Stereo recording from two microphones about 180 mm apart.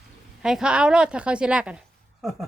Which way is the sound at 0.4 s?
5° right (ahead or behind).